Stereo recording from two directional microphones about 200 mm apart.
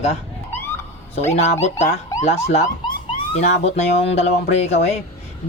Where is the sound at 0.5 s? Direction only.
10° left (ahead or behind).